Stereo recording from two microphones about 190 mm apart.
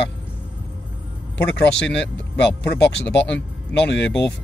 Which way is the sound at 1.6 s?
65° left (ahead or behind).